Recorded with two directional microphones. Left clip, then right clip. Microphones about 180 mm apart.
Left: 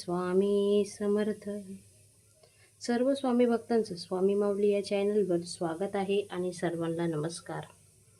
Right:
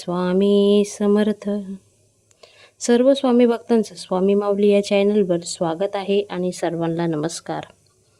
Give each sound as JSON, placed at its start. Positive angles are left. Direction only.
{"t": 0.0, "sound": "speech", "side_deg": -45}